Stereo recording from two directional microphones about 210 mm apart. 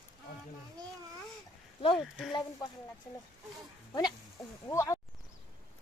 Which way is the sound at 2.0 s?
Centre (ahead or behind).